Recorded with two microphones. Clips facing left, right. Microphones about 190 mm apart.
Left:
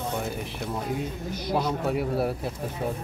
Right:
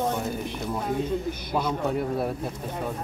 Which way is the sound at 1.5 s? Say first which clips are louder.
Even; 5° left (ahead or behind).